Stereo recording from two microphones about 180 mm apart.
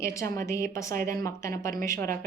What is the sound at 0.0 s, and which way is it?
Speech, 15° left (ahead or behind).